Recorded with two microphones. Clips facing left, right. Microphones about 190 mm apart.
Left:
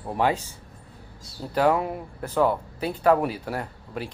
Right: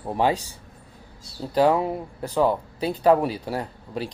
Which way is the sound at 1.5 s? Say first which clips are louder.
Right 2 dB; 20° right (ahead or behind).